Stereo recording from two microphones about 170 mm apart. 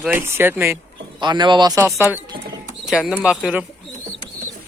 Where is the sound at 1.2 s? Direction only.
25° right (ahead or behind).